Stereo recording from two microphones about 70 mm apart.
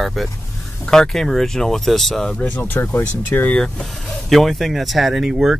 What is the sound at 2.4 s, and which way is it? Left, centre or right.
Speech, left.